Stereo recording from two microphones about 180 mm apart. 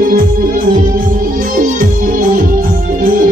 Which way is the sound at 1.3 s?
50° right (ahead or behind).